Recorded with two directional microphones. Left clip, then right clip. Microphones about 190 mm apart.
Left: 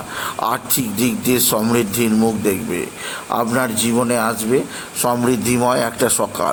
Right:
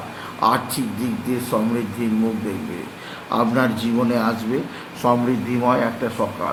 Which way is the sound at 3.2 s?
15° left (ahead or behind).